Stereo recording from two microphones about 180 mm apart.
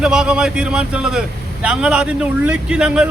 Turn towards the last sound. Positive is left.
turn(degrees=-5)  # may be behind; listen again after turning